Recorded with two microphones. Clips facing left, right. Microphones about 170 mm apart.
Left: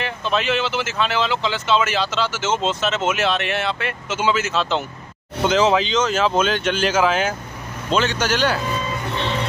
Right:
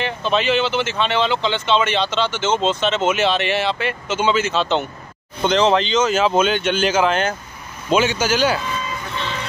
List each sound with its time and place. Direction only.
0.0 s speech: centre (ahead or behind)
7.9 s speech: 5° right (ahead or behind)